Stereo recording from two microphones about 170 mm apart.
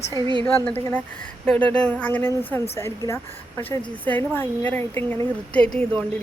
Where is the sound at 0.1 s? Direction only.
25° right (ahead or behind).